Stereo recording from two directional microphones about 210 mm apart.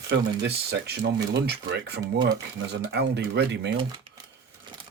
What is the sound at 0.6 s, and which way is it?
Speech, 50° right (ahead or behind).